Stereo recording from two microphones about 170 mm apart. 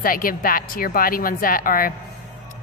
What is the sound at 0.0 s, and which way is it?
Speech, 55° left (ahead or behind).